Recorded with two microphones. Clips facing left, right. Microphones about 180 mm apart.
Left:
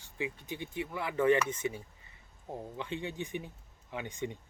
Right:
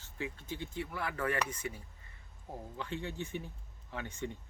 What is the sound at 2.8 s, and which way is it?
Speech, 20° left (ahead or behind).